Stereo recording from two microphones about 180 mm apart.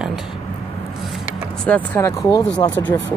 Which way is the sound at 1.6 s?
10° left (ahead or behind).